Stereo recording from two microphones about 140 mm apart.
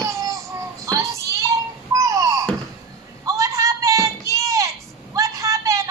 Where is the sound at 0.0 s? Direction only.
25° right (ahead or behind).